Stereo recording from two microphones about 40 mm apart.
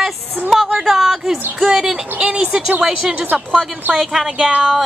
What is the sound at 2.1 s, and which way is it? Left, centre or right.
Speech, right.